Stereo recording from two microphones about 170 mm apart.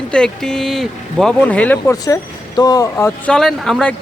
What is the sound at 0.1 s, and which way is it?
Speech, 5° left (ahead or behind).